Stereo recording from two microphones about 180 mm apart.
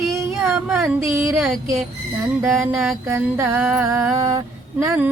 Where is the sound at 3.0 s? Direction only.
15° right (ahead or behind).